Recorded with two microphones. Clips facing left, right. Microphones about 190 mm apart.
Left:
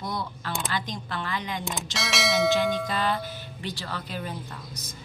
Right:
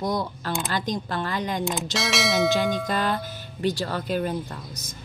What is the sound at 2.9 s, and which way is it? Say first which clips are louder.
A woman's voice: right 2 dB; 50° right (ahead or behind).